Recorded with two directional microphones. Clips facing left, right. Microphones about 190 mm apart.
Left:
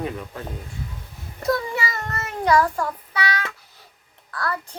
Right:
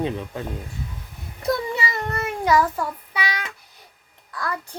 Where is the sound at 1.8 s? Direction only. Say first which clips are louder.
Right 2 dB; 15° right (ahead or behind).